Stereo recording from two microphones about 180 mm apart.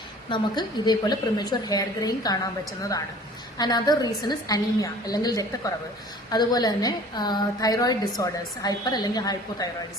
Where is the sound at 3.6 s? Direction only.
25° left (ahead or behind).